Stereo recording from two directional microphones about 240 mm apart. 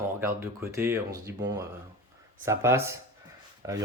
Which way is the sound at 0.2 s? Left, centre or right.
Centre.